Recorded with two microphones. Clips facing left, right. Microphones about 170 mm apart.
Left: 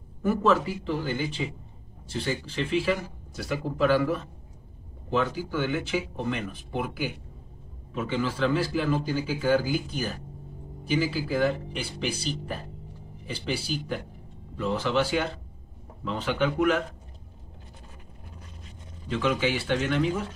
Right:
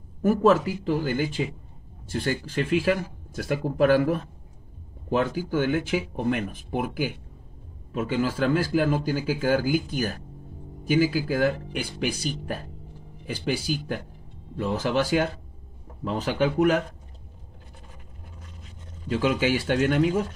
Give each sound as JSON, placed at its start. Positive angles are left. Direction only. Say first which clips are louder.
{"t": 0.2, "sound": "speech", "louder": "right 4 dB", "side_deg": -45}
{"t": 19.0, "sound": "speech", "louder": "right 3 dB", "side_deg": -40}